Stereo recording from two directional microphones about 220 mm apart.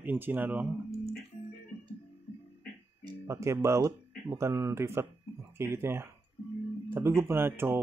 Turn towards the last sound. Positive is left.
turn(degrees=-10)  # may be behind; listen again after turning